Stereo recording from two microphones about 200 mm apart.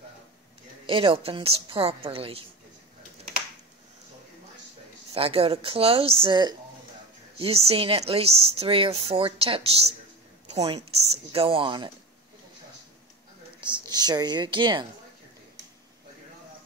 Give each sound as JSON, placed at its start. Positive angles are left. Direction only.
{"t": 0.8, "sound": "a woman's voice", "side_deg": -25}
{"t": 5.1, "sound": "a woman's voice", "side_deg": -30}
{"t": 13.6, "sound": "a woman's voice", "side_deg": -20}